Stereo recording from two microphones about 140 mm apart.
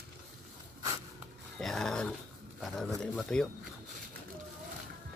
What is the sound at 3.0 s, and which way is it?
Speech, 5° left (ahead or behind).